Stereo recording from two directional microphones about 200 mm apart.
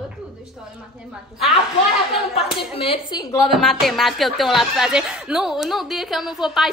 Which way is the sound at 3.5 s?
Centre (ahead or behind).